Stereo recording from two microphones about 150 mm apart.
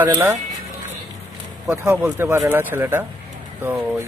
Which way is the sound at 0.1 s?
20° right (ahead or behind).